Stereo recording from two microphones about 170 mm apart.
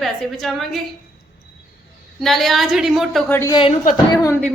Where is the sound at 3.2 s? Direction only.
15° left (ahead or behind).